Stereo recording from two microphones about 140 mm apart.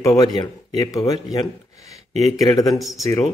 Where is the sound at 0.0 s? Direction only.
25° left (ahead or behind).